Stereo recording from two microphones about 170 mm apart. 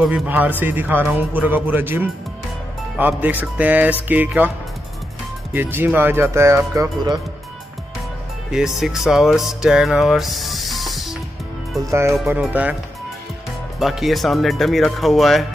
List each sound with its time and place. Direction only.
0.0 s speech: 10° right (ahead or behind)
5.5 s speech: 10° right (ahead or behind)
8.5 s music: 5° right (ahead or behind)
11.8 s speech: 15° right (ahead or behind)
13.7 s speech: centre (ahead or behind)